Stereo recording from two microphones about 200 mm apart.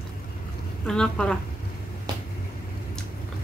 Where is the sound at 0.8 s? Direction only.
5° left (ahead or behind).